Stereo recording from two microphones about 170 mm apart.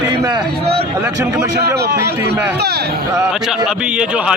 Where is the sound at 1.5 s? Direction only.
70° right (ahead or behind).